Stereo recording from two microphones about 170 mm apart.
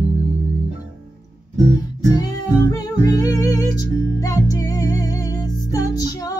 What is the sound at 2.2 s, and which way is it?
Music, 20° left (ahead or behind).